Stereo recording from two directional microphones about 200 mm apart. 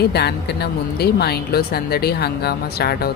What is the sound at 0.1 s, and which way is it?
A woman's voice, 55° left (ahead or behind).